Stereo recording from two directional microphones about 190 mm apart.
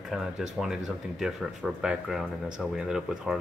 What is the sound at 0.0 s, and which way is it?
Speech, centre (ahead or behind).